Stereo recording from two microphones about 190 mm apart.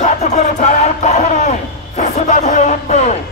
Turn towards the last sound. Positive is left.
turn(degrees=35)  # may be behind; listen again after turning